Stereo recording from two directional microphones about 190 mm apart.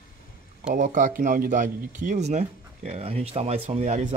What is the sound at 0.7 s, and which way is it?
Speech, 40° right (ahead or behind).